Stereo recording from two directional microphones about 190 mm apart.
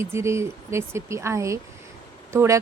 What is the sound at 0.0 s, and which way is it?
Speech, 15° right (ahead or behind).